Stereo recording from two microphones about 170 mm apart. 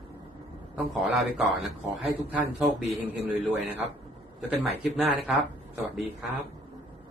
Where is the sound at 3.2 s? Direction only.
10° right (ahead or behind).